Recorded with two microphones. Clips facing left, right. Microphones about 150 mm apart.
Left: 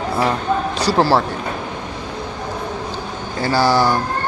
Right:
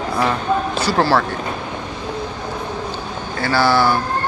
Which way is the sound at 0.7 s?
35° left (ahead or behind).